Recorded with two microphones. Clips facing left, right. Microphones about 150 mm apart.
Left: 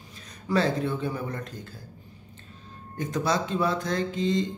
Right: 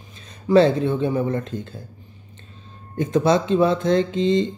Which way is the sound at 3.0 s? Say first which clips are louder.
Right 8 dB; 25° right (ahead or behind).